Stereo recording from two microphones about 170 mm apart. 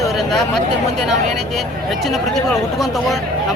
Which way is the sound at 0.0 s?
Centre (ahead or behind).